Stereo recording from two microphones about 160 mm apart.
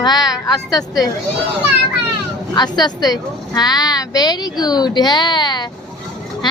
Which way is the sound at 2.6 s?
25° left (ahead or behind).